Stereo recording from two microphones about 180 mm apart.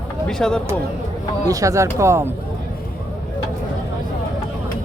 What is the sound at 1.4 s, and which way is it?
Speech, 20° right (ahead or behind).